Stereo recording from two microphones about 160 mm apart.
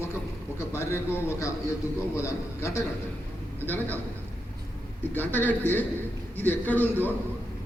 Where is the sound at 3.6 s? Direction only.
10° left (ahead or behind).